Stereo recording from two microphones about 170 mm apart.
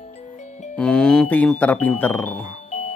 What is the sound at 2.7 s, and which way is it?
Music, 45° left (ahead or behind).